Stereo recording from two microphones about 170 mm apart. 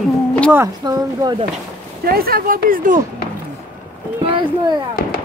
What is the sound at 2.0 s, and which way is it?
Speech, 60° right (ahead or behind).